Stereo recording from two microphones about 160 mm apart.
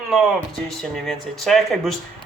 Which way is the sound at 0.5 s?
Centre (ahead or behind).